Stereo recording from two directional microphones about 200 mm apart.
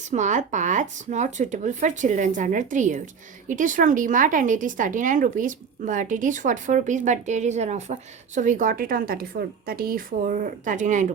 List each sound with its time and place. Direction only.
0.1 s a woman's voice: 35° right (ahead or behind)